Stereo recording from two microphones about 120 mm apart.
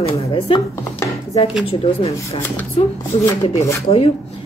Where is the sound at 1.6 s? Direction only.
55° left (ahead or behind).